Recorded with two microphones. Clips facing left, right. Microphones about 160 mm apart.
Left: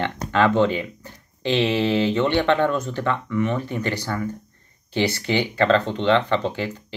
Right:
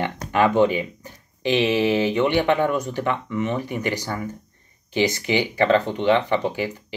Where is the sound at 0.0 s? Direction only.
15° right (ahead or behind).